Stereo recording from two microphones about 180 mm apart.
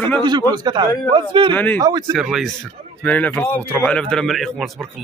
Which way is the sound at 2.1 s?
Centre (ahead or behind).